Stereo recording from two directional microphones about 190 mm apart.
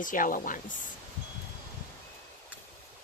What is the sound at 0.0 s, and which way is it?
Speech, 45° left (ahead or behind).